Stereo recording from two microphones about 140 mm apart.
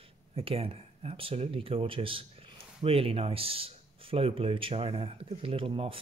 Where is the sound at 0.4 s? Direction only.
40° right (ahead or behind).